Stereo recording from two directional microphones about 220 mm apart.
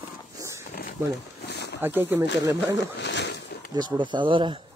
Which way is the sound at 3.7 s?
20° right (ahead or behind).